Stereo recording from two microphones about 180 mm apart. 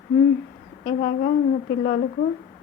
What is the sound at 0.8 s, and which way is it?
Speech, 55° left (ahead or behind).